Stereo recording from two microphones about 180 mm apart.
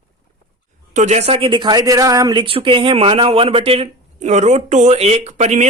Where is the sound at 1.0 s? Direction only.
40° right (ahead or behind).